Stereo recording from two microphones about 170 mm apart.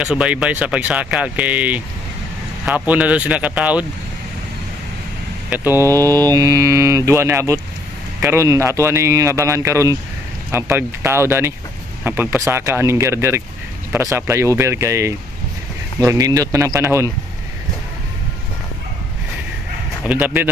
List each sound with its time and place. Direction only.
0.0 s mantra: 5° right (ahead or behind)
2.9 s mantra: 10° right (ahead or behind)
5.5 s mantra: 10° right (ahead or behind)
16.0 s speech: 20° right (ahead or behind)
20.1 s mantra: 10° right (ahead or behind)